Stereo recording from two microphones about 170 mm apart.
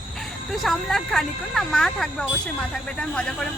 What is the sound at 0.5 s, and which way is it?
Speech, centre (ahead or behind).